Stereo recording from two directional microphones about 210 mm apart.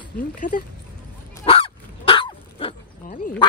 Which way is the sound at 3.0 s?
40° left (ahead or behind).